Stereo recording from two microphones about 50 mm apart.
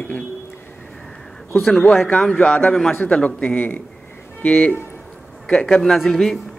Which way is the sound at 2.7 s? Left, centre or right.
Centre.